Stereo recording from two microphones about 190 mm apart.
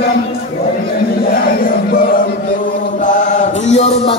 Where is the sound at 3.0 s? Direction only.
40° left (ahead or behind).